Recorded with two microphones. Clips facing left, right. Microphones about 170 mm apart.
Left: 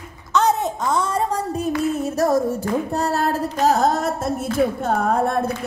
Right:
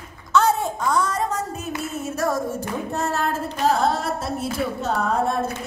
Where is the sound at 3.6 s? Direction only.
45° left (ahead or behind).